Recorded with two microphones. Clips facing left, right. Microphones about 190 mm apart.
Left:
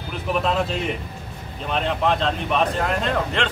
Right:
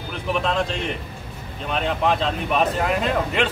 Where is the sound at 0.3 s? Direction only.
5° left (ahead or behind).